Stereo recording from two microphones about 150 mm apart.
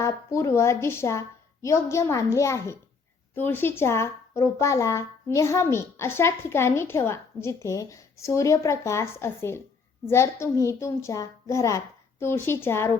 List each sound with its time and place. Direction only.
0.0 s a child's voice: 20° left (ahead or behind)